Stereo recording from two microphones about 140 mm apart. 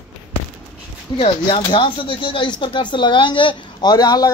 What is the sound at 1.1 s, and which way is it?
Speech, 40° left (ahead or behind).